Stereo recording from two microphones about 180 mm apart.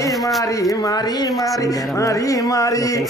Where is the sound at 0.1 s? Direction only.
Centre (ahead or behind).